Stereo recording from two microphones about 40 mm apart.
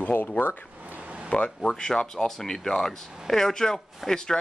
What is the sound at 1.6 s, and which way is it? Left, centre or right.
Speech, centre.